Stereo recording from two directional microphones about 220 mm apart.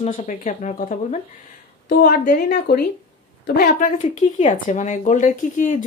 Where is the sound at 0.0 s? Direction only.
35° left (ahead or behind).